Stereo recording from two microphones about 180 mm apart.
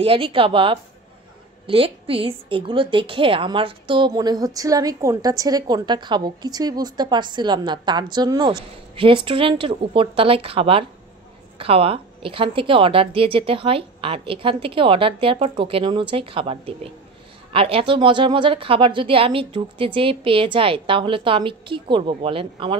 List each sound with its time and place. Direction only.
0.0 s a woman's voice: 30° right (ahead or behind)